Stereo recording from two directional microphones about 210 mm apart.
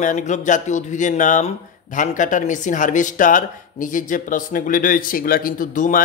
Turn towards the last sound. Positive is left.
turn(degrees=40)  # may be behind; listen again after turning